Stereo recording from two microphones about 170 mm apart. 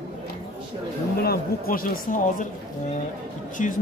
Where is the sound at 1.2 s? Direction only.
60° left (ahead or behind).